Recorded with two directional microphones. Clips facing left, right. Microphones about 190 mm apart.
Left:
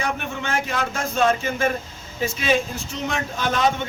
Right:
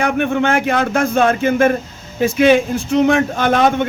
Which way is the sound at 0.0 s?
60° right (ahead or behind).